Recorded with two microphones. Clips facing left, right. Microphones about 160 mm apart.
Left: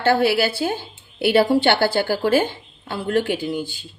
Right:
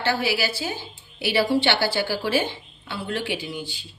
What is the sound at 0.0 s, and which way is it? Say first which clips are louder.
A woman's voice: left 7 dB; 55° left (ahead or behind).